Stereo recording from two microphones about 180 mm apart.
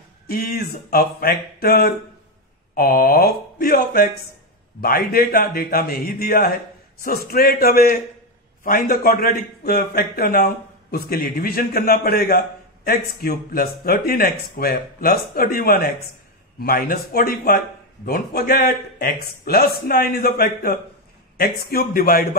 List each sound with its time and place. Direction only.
0.3 s a man's voice: 60° left (ahead or behind)